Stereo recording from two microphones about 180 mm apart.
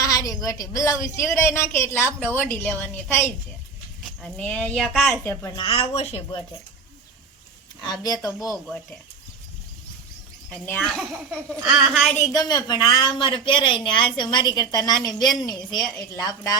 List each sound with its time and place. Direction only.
0.0 s a woman's voice: 20° left (ahead or behind); by 5.1 s centre (ahead or behind)
5.2 s a woman's voice: 15° left (ahead or behind)
5.5 s speech: 30° left (ahead or behind)
7.8 s a woman's voice: 20° left (ahead or behind)
10.5 s speech: 5° left (ahead or behind)
12.1 s a woman's voice: 20° left (ahead or behind)